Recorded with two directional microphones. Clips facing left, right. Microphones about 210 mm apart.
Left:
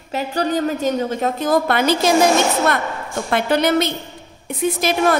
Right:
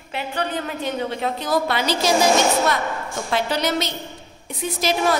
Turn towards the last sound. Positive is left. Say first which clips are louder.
# left 4 dB
turn(degrees=55)  # may be behind; listen again after turning